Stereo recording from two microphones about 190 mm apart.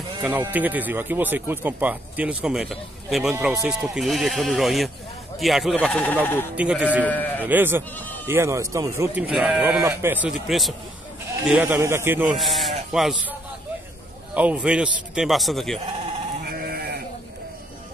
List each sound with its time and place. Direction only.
0.2 s a man's voice: 10° right (ahead or behind); by 6.4 s 10° left (ahead or behind)
6.5 s speech: 5° right (ahead or behind)
7.1 s speech: 10° left (ahead or behind)
7.4 s speech: 10° right (ahead or behind)
12.4 s a man's voice: centre (ahead or behind)
16.4 s sheep: 55° right (ahead or behind)